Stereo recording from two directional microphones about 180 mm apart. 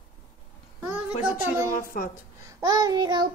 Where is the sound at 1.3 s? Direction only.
50° left (ahead or behind).